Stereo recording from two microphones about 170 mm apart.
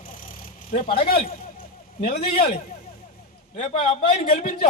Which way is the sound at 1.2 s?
50° left (ahead or behind).